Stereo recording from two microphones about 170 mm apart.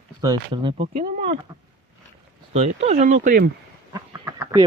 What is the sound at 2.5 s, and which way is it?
Speech, 40° right (ahead or behind).